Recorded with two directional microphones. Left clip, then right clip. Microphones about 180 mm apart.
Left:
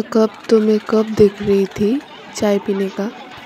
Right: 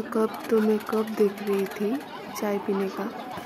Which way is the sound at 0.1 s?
25° left (ahead or behind).